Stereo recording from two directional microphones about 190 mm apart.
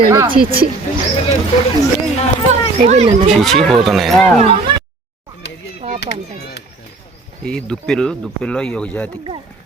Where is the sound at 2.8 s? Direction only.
35° right (ahead or behind).